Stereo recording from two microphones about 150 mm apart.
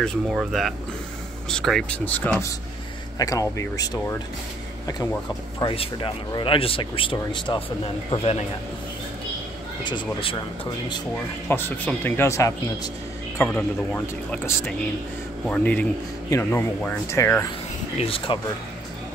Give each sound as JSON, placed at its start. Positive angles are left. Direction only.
{"t": 0.3, "sound": "speech", "side_deg": -5}
{"t": 3.2, "sound": "speech", "side_deg": 20}
{"t": 5.6, "sound": "speech", "side_deg": 35}
{"t": 8.1, "sound": "speech", "side_deg": 45}
{"t": 9.8, "sound": "speech", "side_deg": 35}
{"t": 11.4, "sound": "speech", "side_deg": 15}
{"t": 17.9, "sound": "speech", "side_deg": 40}